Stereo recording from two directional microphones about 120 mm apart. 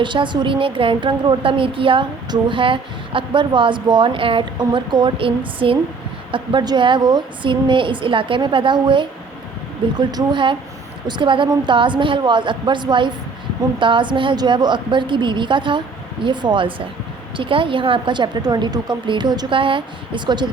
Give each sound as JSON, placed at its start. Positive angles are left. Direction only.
{"t": 0.0, "sound": "a woman's voice", "side_deg": -40}